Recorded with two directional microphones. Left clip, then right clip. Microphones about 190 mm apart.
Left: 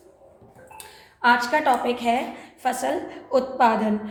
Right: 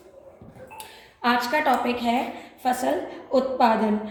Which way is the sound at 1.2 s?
35° left (ahead or behind).